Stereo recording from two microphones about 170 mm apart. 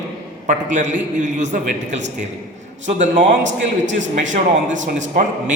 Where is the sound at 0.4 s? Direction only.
45° right (ahead or behind).